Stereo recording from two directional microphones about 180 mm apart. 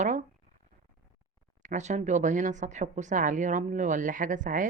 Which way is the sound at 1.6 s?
40° right (ahead or behind).